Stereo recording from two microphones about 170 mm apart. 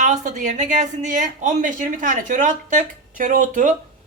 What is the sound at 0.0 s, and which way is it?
A woman's voice, 45° right (ahead or behind).